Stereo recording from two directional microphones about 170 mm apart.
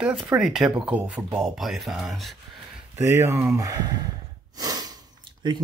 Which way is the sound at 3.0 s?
15° right (ahead or behind).